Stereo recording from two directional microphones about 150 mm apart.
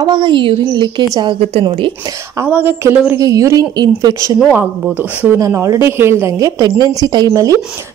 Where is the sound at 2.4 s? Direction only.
15° right (ahead or behind).